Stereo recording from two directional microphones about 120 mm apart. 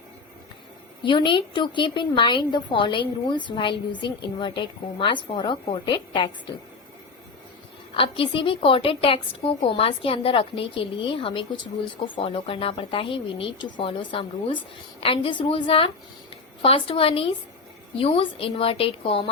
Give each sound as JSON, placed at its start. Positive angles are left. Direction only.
{"t": 1.0, "sound": "a woman's voice", "side_deg": 40}
{"t": 7.9, "sound": "a woman's voice", "side_deg": 45}